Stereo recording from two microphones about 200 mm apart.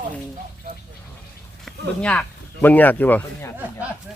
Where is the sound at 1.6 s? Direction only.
5° left (ahead or behind).